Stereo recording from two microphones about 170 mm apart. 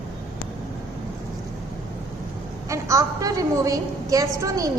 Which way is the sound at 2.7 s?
20° right (ahead or behind).